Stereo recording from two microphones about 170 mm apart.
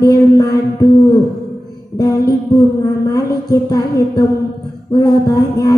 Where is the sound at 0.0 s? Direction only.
20° left (ahead or behind).